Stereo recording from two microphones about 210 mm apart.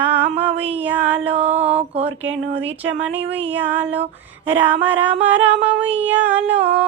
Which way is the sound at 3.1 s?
60° right (ahead or behind).